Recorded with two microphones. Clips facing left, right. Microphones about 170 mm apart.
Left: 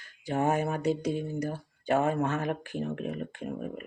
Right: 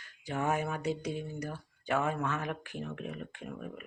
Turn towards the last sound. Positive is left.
turn(degrees=35)  # may be behind; listen again after turning